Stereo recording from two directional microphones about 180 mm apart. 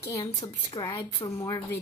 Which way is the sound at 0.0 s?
20° left (ahead or behind).